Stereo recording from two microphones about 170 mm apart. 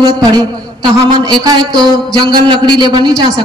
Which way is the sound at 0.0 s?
25° right (ahead or behind).